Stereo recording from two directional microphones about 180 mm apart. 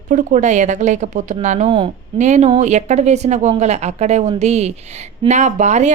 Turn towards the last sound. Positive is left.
turn(degrees=-40)  # may be behind; listen again after turning